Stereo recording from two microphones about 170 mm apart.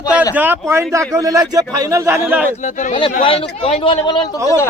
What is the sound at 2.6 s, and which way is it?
Speech, 45° left (ahead or behind).